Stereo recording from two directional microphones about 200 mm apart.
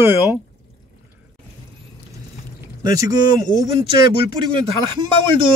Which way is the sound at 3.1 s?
40° left (ahead or behind).